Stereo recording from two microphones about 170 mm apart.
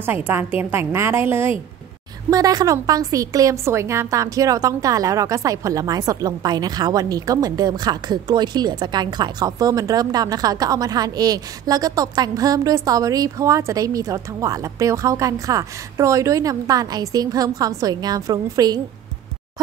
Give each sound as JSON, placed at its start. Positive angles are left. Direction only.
{"t": 0.0, "sound": "a woman's voice", "side_deg": -10}